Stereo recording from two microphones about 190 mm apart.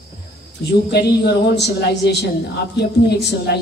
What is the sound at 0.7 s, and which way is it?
A woman's voice, 60° left (ahead or behind).